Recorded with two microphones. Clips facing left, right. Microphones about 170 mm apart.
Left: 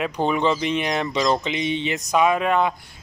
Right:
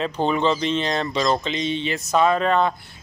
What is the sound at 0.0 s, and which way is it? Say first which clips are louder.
Speech: even; 10° left (ahead or behind).